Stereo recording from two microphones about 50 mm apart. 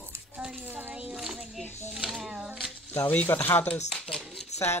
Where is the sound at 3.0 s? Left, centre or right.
Left.